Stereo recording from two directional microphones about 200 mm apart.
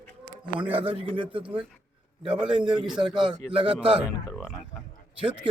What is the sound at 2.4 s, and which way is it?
Speech, 25° right (ahead or behind).